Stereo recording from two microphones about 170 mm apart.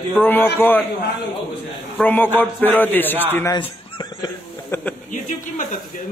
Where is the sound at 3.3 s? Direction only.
20° left (ahead or behind).